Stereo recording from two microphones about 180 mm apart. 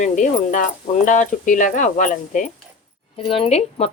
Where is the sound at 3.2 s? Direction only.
30° left (ahead or behind).